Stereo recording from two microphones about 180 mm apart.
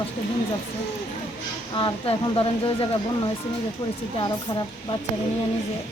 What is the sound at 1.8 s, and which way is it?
Speech, 30° left (ahead or behind).